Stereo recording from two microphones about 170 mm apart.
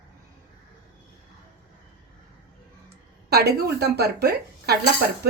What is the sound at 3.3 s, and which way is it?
Speech, 70° right (ahead or behind).